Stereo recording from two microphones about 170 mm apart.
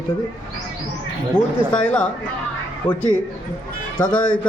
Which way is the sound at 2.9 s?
25° left (ahead or behind).